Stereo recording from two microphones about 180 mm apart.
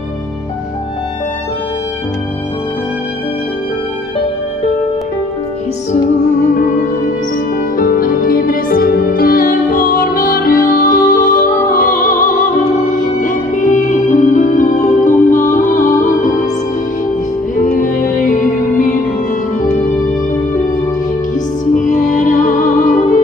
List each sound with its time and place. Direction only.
7.7 s music: 50° left (ahead or behind)
17.6 s music: 50° left (ahead or behind)
21.7 s music: 45° left (ahead or behind)